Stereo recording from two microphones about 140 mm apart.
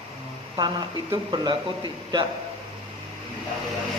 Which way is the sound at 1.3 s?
30° right (ahead or behind).